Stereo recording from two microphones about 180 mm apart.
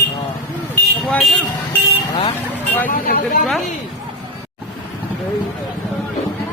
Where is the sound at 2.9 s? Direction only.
50° left (ahead or behind).